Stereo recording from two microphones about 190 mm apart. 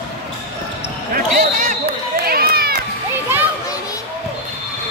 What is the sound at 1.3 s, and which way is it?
Basketball bounce, 45° right (ahead or behind).